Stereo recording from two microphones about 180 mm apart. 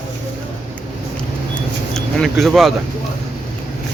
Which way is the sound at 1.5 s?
5° left (ahead or behind).